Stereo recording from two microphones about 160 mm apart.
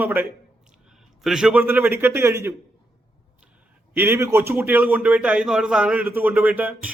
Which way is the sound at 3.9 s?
15° right (ahead or behind).